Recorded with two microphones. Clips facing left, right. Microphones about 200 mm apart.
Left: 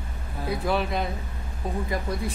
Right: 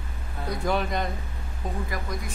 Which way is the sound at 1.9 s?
30° left (ahead or behind).